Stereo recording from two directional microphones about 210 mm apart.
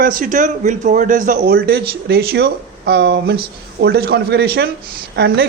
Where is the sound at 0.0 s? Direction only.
40° right (ahead or behind).